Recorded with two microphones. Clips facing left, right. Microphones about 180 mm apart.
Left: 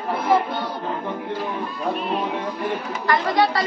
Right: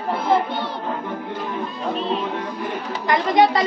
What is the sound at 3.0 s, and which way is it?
Speech, 20° right (ahead or behind).